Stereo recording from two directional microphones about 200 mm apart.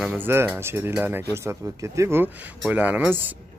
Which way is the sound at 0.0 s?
10° right (ahead or behind).